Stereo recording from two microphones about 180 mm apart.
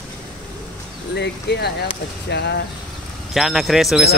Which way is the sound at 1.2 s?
70° left (ahead or behind).